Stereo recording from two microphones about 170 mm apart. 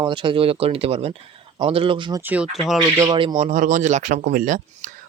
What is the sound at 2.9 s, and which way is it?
Speech, 25° right (ahead or behind).